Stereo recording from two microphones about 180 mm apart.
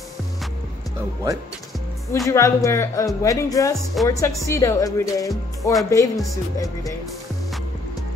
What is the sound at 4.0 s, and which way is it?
Speech, centre (ahead or behind).